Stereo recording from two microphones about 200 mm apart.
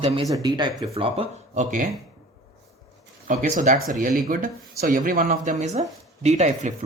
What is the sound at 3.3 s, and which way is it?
Speech, 40° right (ahead or behind).